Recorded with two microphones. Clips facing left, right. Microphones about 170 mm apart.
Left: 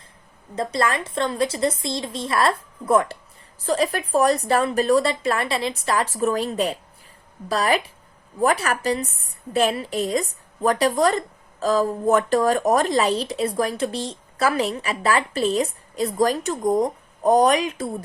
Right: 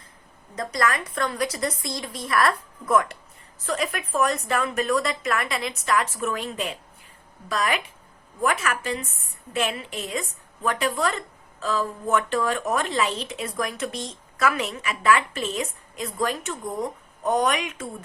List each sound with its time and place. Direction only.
0.5 s a woman's voice: 30° left (ahead or behind)